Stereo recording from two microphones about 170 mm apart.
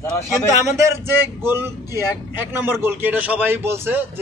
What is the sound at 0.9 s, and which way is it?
A man's voice, 15° right (ahead or behind).